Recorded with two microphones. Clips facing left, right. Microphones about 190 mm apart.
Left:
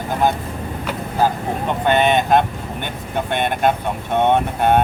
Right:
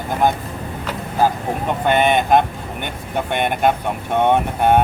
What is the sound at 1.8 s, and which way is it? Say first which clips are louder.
Speech: even; 10° right (ahead or behind).